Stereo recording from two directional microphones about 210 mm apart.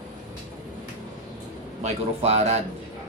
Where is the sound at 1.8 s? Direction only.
30° right (ahead or behind).